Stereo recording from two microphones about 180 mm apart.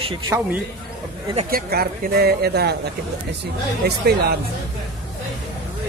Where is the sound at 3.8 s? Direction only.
65° right (ahead or behind).